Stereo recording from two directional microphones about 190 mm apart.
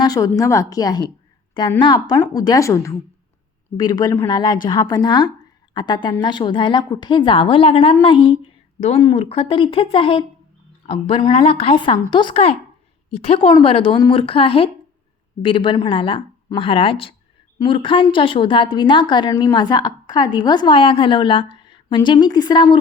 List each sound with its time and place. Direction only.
0.0 s a woman's voice: 20° left (ahead or behind)